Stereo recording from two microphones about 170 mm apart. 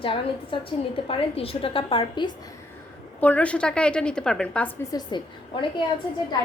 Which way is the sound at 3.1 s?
10° left (ahead or behind).